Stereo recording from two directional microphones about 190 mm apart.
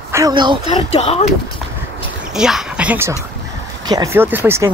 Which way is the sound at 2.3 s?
5° right (ahead or behind).